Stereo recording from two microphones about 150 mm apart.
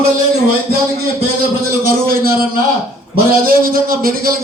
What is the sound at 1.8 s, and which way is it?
Speech, 75° right (ahead or behind).